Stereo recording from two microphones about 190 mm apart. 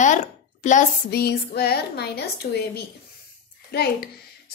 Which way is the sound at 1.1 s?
60° left (ahead or behind).